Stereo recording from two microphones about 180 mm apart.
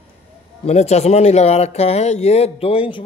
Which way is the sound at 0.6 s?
35° left (ahead or behind).